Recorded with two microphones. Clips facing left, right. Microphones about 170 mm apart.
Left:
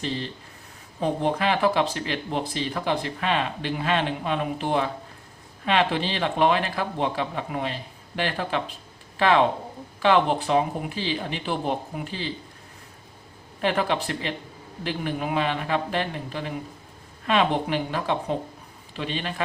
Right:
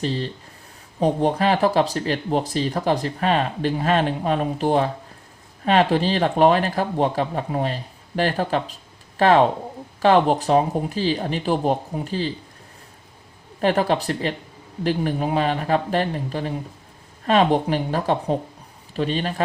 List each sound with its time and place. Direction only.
0.9 s speech: 40° right (ahead or behind)
13.6 s speech: 40° right (ahead or behind)